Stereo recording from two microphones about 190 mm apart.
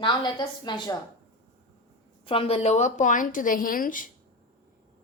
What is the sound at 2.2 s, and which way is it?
A woman's voice, 30° left (ahead or behind).